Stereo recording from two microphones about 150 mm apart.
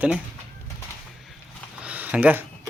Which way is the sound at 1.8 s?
10° right (ahead or behind).